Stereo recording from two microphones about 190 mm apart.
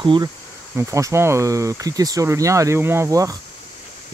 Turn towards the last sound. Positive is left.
turn(degrees=-15)  # may be behind; listen again after turning